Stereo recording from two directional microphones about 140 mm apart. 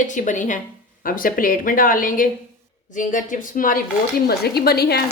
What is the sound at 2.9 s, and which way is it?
A woman's voice, 70° left (ahead or behind).